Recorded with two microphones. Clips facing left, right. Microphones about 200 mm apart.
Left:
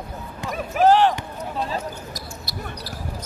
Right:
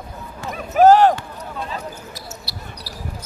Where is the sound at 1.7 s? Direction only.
40° left (ahead or behind).